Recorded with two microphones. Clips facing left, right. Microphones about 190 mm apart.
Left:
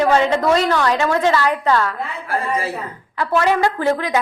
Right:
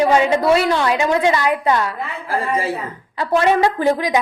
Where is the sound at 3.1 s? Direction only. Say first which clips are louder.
Right 2 dB; 20° right (ahead or behind).